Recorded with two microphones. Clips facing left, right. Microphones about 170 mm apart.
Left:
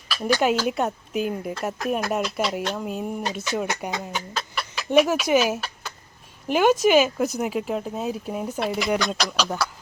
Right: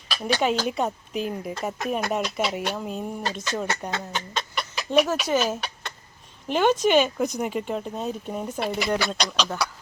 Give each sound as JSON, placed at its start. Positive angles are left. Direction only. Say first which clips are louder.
{"t": 0.7, "sound": "speech", "louder": "left 2 dB", "side_deg": 0}